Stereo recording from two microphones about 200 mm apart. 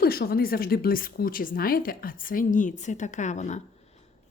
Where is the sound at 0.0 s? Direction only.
50° left (ahead or behind).